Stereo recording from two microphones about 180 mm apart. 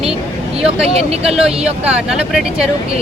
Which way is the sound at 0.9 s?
35° right (ahead or behind).